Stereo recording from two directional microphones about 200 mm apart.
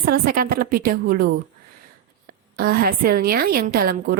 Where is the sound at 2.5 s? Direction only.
45° right (ahead or behind).